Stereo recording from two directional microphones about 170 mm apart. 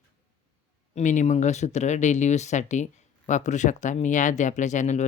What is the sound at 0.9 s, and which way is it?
Speech, 45° left (ahead or behind).